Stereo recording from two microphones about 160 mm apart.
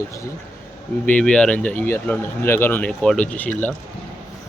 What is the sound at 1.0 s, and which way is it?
Speech, 5° left (ahead or behind).